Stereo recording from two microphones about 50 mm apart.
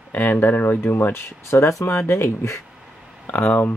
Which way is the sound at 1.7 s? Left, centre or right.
Left.